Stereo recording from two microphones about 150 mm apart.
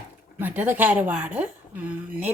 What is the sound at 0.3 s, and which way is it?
Speech, 10° right (ahead or behind).